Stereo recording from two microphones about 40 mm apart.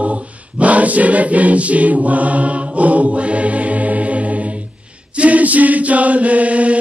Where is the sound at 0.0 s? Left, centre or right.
Right.